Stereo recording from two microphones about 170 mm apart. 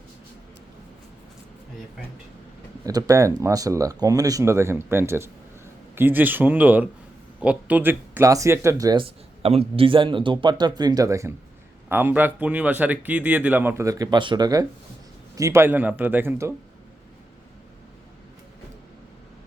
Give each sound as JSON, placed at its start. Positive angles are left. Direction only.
{"t": 2.8, "sound": "speech", "side_deg": -20}